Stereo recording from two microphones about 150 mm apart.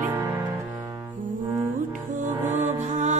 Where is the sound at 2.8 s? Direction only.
50° right (ahead or behind).